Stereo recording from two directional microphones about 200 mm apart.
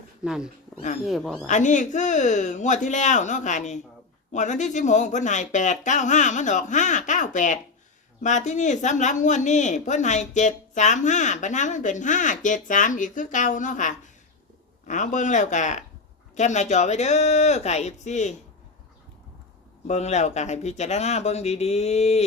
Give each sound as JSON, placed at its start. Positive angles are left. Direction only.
{"t": 0.3, "sound": "speech", "side_deg": -5}
{"t": 1.5, "sound": "speech", "side_deg": 40}
{"t": 19.9, "sound": "speech", "side_deg": 35}